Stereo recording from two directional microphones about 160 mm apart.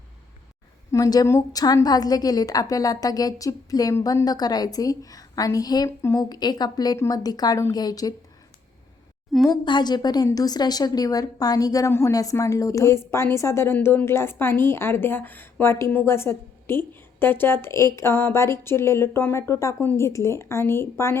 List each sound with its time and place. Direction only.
0.9 s a woman's voice: 20° left (ahead or behind)
9.5 s a woman's voice: 25° left (ahead or behind)